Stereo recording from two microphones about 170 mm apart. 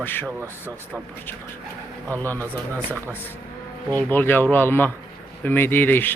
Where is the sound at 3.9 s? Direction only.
10° left (ahead or behind).